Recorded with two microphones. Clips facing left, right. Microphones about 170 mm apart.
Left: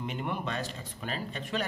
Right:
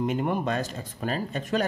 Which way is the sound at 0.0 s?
45° right (ahead or behind).